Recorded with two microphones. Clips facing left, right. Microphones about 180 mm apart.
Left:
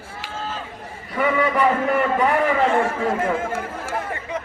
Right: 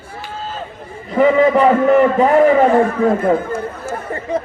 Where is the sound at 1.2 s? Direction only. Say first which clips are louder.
Right 9 dB; 30° right (ahead or behind).